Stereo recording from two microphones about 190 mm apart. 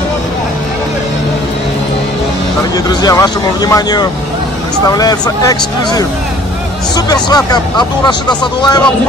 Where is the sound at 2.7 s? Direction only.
20° left (ahead or behind).